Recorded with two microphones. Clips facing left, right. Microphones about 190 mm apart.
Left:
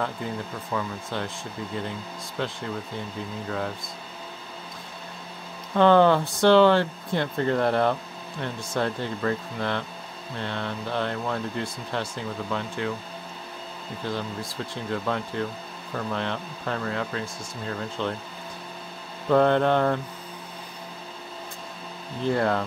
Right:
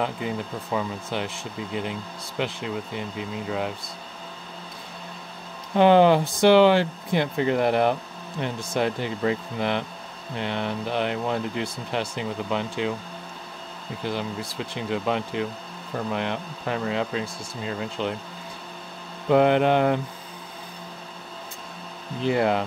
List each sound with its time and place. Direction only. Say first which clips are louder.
0.7 s speech: right 2 dB; 15° right (ahead or behind)
5.8 s speech: right 1 dB; 15° right (ahead or behind)
14.6 s speech: right 2 dB; 15° right (ahead or behind)
19.2 s speech: right 1 dB; 15° right (ahead or behind)
22.2 s speech: right 2 dB; 15° right (ahead or behind)